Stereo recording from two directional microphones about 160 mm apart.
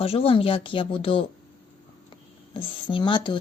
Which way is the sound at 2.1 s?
30° left (ahead or behind).